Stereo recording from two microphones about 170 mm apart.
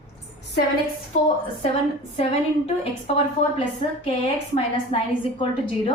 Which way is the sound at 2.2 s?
35° left (ahead or behind).